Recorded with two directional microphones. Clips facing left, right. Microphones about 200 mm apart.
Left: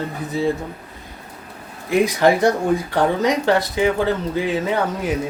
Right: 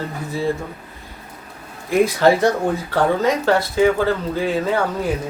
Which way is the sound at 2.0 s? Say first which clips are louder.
Right 1 dB; 15° left (ahead or behind).